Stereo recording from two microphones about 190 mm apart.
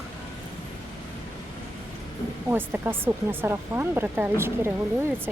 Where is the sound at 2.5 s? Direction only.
10° right (ahead or behind).